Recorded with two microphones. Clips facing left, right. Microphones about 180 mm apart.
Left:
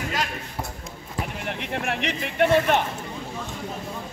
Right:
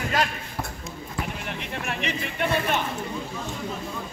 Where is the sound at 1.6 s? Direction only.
65° left (ahead or behind).